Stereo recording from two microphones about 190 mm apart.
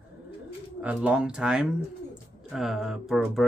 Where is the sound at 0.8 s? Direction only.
5° right (ahead or behind).